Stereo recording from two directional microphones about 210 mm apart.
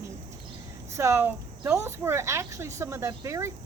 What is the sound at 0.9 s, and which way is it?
A woman's voice, 15° right (ahead or behind).